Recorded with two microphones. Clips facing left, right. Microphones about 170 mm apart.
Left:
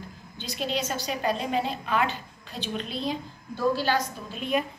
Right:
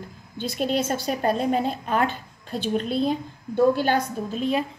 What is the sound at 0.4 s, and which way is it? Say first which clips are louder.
A woman's voice: right 6 dB; 50° right (ahead or behind).